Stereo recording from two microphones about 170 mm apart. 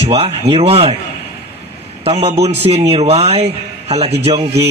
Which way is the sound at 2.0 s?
40° right (ahead or behind).